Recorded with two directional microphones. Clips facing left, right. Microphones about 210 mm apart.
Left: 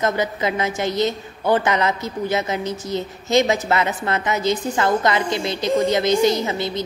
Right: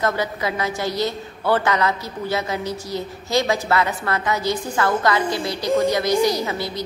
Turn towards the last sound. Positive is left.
turn(degrees=20)  # may be behind; listen again after turning